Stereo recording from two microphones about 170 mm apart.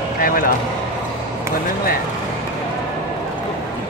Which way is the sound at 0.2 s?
55° left (ahead or behind).